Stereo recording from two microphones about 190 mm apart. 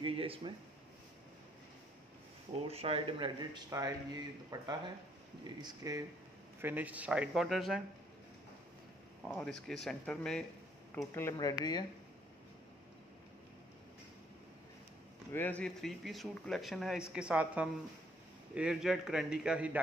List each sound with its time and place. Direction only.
0.0 s speech: 30° right (ahead or behind)
2.7 s speech: 30° right (ahead or behind)
6.6 s speech: 10° right (ahead or behind)
9.2 s speech: 5° left (ahead or behind)
11.1 s speech: 15° left (ahead or behind)
15.3 s speech: 10° left (ahead or behind)